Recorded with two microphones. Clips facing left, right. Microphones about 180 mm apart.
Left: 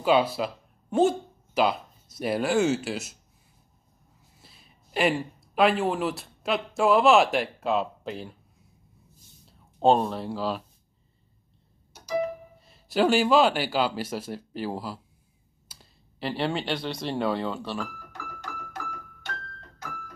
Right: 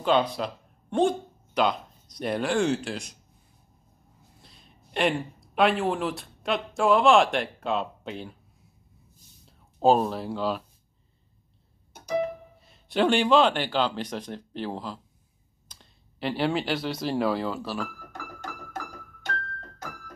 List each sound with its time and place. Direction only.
0.0 s speech: 5° left (ahead or behind)
4.4 s speech: 5° left (ahead or behind)
9.5 s speech: centre (ahead or behind)
11.9 s music: 50° right (ahead or behind)
12.6 s speech: centre (ahead or behind)
18.1 s music: 45° right (ahead or behind)